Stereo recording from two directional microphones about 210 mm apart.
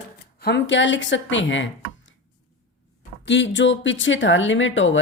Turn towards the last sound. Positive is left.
turn(degrees=65)  # may be behind; listen again after turning